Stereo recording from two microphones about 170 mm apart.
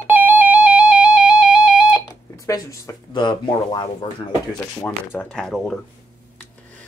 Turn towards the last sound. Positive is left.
turn(degrees=0)  # may be behind; listen again after turning